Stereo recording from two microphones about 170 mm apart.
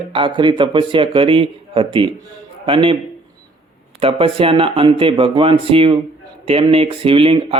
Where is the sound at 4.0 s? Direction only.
35° right (ahead or behind).